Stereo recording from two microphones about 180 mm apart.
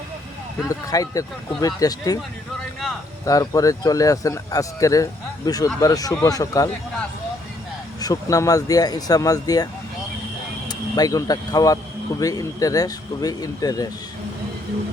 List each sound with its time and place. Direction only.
0.7 s a man's voice: 20° left (ahead or behind)
3.2 s a man's voice: 20° left (ahead or behind)
8.0 s a man's voice: 20° left (ahead or behind)
10.7 s a man's voice: 20° left (ahead or behind)